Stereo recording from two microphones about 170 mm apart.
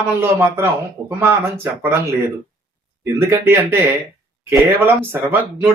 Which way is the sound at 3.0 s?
15° right (ahead or behind).